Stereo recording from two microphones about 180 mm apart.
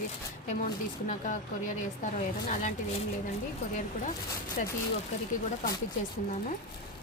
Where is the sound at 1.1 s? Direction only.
45° left (ahead or behind).